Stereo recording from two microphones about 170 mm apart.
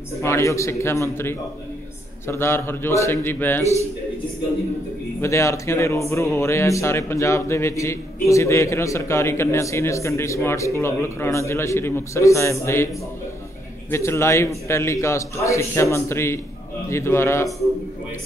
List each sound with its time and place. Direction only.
0.1 s speech: 15° left (ahead or behind)
5.2 s speech: 15° left (ahead or behind)
13.8 s speech: 15° left (ahead or behind)